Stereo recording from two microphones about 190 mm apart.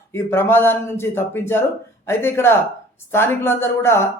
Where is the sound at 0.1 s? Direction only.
10° left (ahead or behind).